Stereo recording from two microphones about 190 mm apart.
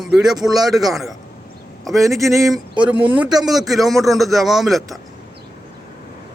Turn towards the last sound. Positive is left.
turn(degrees=0)  # may be behind; listen again after turning